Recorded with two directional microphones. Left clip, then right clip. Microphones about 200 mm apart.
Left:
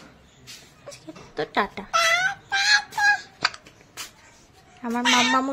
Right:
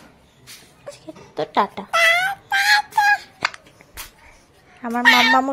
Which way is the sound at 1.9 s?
35° right (ahead or behind).